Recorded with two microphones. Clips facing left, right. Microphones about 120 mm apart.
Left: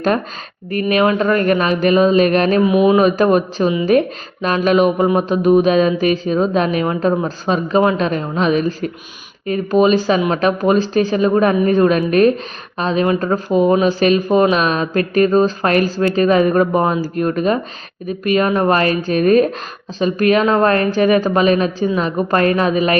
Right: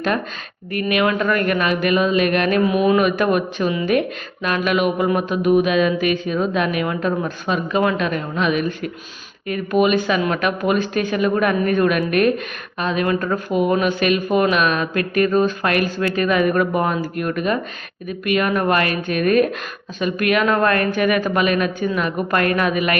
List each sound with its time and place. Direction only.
0.7 s speech: 35° left (ahead or behind)
2.6 s speech: 25° left (ahead or behind)